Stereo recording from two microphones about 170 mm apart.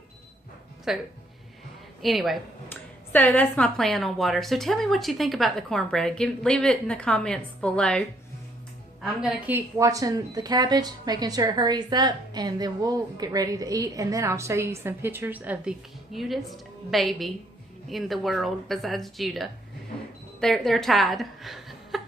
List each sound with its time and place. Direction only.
0.9 s a woman's voice: 5° right (ahead or behind)
3.1 s a woman's voice: 10° left (ahead or behind)
9.5 s a woman's voice: 15° right (ahead or behind)